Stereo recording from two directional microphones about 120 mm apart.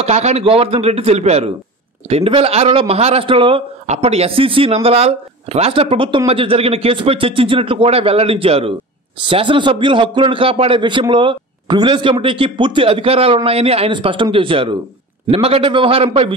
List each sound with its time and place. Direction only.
0.0 s a man's voice: 65° right (ahead or behind); by 3.6 s 45° right (ahead or behind)
3.8 s a man's voice: 65° right (ahead or behind)